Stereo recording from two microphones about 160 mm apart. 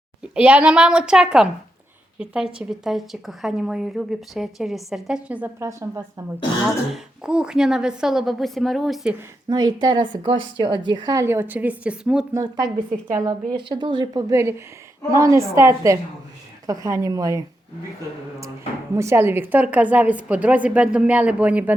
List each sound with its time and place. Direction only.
0.3 s speech: 10° right (ahead or behind)
6.9 s speech: 5° right (ahead or behind)
9.5 s a woman's voice: 25° right (ahead or behind); by 12.2 s 5° right (ahead or behind)
12.3 s a woman's voice: 20° right (ahead or behind)
18.9 s a woman's voice: 15° right (ahead or behind)